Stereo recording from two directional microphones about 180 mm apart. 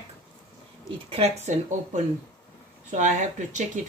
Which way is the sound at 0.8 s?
35° right (ahead or behind).